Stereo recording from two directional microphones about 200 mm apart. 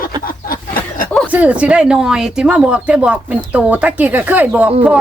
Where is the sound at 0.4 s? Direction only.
45° left (ahead or behind).